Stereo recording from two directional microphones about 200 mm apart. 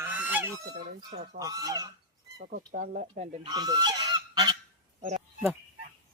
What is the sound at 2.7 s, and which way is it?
Speech, 45° right (ahead or behind).